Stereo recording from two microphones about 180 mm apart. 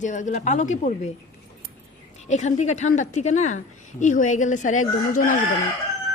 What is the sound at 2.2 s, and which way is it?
A woman's voice, 40° left (ahead or behind).